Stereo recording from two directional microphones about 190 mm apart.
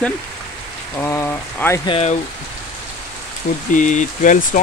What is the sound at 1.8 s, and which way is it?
Speech, 30° left (ahead or behind).